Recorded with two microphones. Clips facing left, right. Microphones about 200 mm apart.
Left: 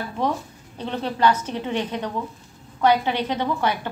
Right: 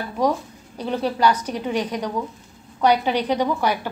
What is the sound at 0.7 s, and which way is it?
A woman's voice, 10° right (ahead or behind).